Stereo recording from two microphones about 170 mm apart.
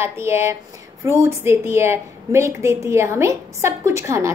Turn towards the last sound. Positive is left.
turn(degrees=-15)  # may be behind; listen again after turning